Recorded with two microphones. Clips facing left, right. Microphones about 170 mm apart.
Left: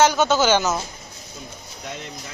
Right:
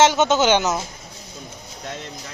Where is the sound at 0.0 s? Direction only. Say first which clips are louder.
Right 1 dB; 20° right (ahead or behind).